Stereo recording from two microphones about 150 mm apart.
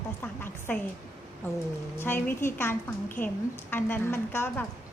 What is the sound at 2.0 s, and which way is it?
A woman's voice, 15° left (ahead or behind).